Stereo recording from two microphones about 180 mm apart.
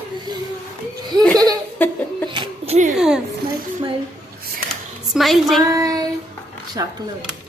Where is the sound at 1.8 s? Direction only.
10° left (ahead or behind).